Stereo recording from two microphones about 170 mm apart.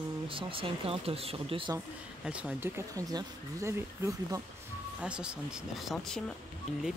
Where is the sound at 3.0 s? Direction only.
20° right (ahead or behind).